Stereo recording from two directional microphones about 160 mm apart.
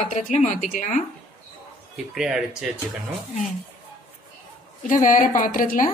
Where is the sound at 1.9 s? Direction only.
5° right (ahead or behind).